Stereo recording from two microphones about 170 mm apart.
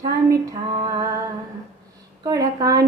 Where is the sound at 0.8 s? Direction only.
20° right (ahead or behind).